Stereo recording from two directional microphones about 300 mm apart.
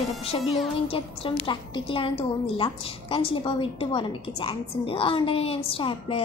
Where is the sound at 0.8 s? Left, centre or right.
Centre.